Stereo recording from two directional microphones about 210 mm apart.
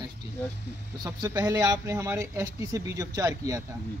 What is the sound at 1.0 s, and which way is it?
Speech, 15° right (ahead or behind).